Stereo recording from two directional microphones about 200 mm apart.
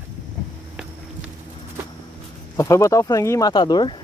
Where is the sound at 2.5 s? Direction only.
15° left (ahead or behind).